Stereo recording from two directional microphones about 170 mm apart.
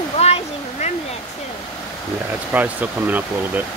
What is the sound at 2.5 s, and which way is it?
Speech, 10° right (ahead or behind).